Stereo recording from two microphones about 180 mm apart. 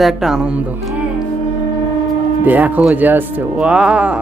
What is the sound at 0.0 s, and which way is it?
Speech, centre (ahead or behind).